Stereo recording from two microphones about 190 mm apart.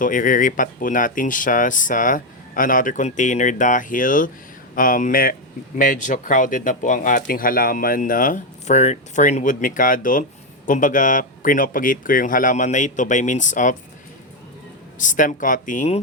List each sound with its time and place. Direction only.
0.0 s speech: 45° left (ahead or behind)
14.9 s speech: 40° left (ahead or behind)